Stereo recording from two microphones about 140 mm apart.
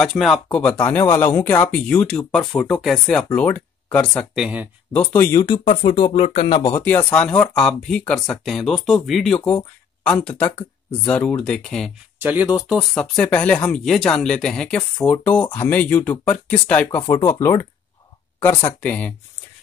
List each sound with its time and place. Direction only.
0.0 s speech: centre (ahead or behind)
4.4 s speech: 10° right (ahead or behind)
4.9 s speech: 15° left (ahead or behind)
5.7 s speech: 40° left (ahead or behind)
6.2 s speech: 50° left (ahead or behind)
6.5 s speech: 30° left (ahead or behind)
6.8 s speech: 10° left (ahead or behind)
12.2 s speech: 10° right (ahead or behind)
13.0 s speech: 10° left (ahead or behind)